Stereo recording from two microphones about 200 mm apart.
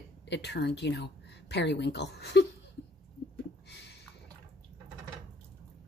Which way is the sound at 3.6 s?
55° left (ahead or behind).